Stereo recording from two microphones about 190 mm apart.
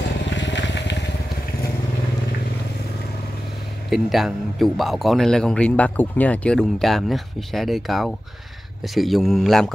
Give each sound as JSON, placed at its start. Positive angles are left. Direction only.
{"t": 0.4, "sound": "motorcycle", "side_deg": 70}
{"t": 3.9, "sound": "speech", "side_deg": 0}